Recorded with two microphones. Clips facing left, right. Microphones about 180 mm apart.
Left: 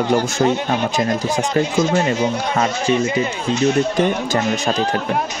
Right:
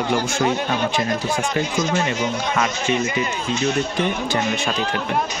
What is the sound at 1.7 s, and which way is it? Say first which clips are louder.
Speech: left 4 dB; 30° left (ahead or behind).